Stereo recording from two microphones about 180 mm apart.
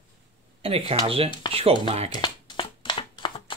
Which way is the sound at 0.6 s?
30° right (ahead or behind).